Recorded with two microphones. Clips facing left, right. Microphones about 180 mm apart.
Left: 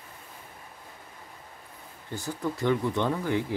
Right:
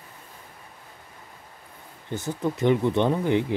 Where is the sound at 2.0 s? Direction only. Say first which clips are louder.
Right 4 dB; 20° right (ahead or behind).